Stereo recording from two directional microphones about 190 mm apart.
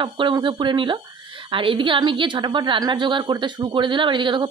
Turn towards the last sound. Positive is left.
turn(degrees=-25)  # may be behind; listen again after turning